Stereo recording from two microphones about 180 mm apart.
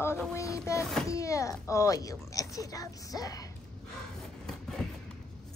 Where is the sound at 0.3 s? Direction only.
15° left (ahead or behind).